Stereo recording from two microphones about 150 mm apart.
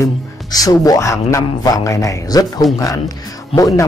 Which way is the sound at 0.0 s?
25° left (ahead or behind).